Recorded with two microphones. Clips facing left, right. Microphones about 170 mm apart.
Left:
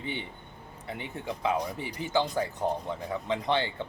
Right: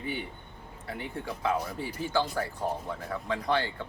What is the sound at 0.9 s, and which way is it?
Speech, 20° left (ahead or behind).